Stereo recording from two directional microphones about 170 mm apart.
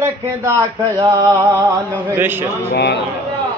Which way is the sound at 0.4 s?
25° right (ahead or behind).